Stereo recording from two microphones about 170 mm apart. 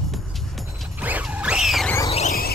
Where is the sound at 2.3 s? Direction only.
60° left (ahead or behind).